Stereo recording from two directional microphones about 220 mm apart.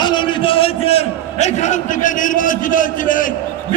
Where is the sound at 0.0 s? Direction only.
20° left (ahead or behind); by 3.2 s 40° left (ahead or behind).